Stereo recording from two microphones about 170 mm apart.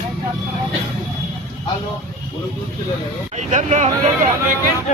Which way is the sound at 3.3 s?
45° right (ahead or behind).